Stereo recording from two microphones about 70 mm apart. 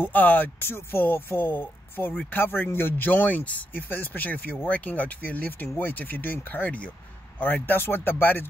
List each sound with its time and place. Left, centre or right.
0.0 s speech: left